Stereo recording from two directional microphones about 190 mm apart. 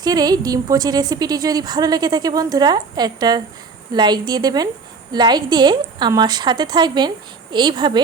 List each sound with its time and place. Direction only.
0.0 s a woman's voice: 20° right (ahead or behind)